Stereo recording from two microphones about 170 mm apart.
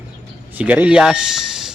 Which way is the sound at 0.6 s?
10° right (ahead or behind).